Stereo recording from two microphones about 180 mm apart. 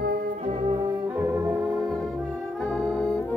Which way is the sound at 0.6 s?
25° right (ahead or behind).